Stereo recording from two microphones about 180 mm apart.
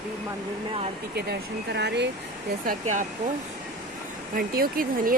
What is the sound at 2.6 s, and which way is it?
Speech, 50° right (ahead or behind).